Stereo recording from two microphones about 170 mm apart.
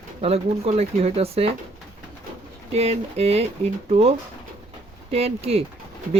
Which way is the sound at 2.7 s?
35° right (ahead or behind).